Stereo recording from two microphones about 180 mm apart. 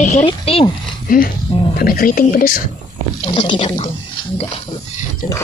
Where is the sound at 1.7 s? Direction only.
55° left (ahead or behind).